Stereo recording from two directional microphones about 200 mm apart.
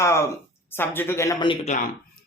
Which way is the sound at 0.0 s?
15° left (ahead or behind).